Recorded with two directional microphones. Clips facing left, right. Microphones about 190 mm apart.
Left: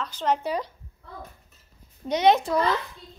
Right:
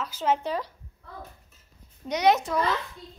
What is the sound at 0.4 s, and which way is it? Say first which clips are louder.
Speech: left 2 dB; 15° left (ahead or behind).